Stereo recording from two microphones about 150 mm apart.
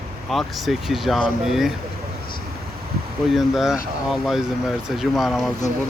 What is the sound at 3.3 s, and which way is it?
Speech, 5° right (ahead or behind).